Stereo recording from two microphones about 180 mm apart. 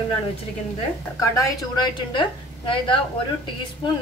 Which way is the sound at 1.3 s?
20° left (ahead or behind).